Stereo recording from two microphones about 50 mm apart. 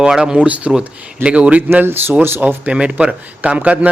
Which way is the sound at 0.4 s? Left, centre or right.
Right.